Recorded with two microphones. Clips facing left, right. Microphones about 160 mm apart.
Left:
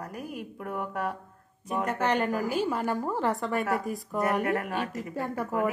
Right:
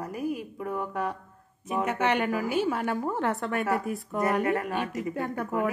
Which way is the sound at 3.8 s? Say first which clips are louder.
Right 1 dB; 40° left (ahead or behind).